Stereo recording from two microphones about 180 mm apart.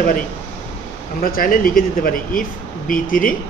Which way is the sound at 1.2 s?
55° left (ahead or behind).